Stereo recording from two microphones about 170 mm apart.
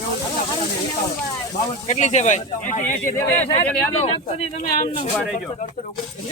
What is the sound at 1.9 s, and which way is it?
Speech, 40° left (ahead or behind).